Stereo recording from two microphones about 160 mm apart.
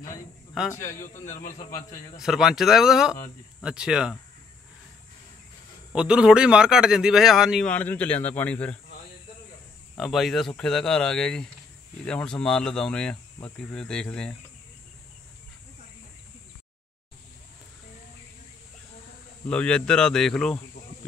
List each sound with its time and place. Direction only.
0.7 s speech: 15° left (ahead or behind)
1.0 s a man's voice: 50° left (ahead or behind)
2.1 s speech: centre (ahead or behind)
5.9 s speech: 5° right (ahead or behind)
7.7 s speech: 10° left (ahead or behind)
9.9 s speech: centre (ahead or behind)
19.4 s speech: 5° left (ahead or behind)